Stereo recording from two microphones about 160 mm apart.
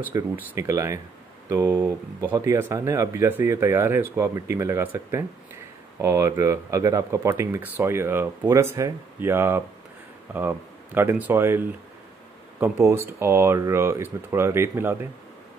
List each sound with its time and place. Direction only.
0.0 s speech: 15° right (ahead or behind)